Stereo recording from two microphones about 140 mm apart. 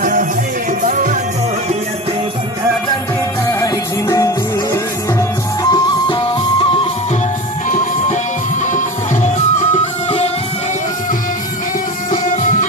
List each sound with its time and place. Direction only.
0.0 s music: 70° right (ahead or behind)
3.4 s music: 25° left (ahead or behind)
5.6 s music: 30° left (ahead or behind)
8.7 s music: 60° left (ahead or behind)
12.1 s music: 70° left (ahead or behind)